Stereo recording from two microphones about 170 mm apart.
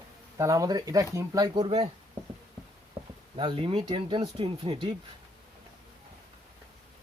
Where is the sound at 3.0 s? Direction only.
20° right (ahead or behind).